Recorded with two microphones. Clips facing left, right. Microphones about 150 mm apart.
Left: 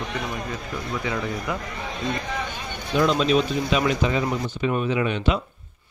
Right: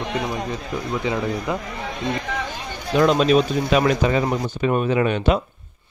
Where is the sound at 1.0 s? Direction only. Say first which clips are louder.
Right 4 dB; 25° right (ahead or behind).